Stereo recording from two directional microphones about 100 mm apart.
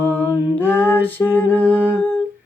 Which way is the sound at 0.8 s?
20° left (ahead or behind).